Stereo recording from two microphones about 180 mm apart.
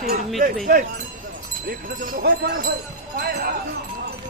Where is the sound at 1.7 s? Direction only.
50° right (ahead or behind).